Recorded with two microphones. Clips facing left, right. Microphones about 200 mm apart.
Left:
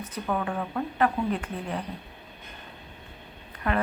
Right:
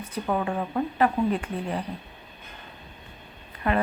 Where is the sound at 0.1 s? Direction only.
20° right (ahead or behind).